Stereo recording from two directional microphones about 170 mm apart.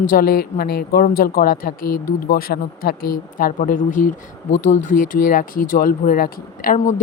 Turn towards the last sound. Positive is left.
turn(degrees=50)  # may be behind; listen again after turning